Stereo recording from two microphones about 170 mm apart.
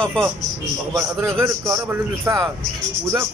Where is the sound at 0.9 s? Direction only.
15° right (ahead or behind).